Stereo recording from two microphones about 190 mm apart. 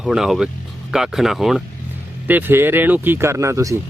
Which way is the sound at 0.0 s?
Centre (ahead or behind).